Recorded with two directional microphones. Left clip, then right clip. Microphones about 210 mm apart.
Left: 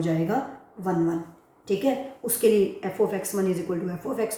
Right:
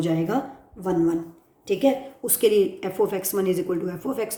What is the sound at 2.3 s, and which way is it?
A woman's voice, 50° right (ahead or behind).